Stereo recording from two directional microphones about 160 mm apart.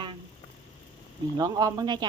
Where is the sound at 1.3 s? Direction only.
25° right (ahead or behind).